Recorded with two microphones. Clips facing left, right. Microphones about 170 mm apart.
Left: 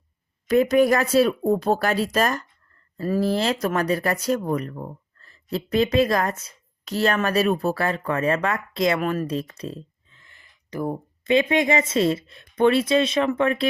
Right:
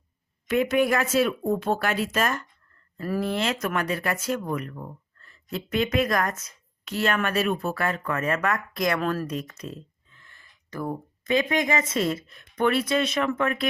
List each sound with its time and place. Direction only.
0.4 s speech: 40° left (ahead or behind)
9.0 s speech: 10° left (ahead or behind)
9.2 s speech: 30° left (ahead or behind)
10.2 s speech: 20° left (ahead or behind)